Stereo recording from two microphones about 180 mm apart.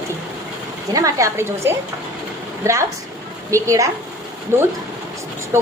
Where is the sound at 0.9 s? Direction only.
20° right (ahead or behind).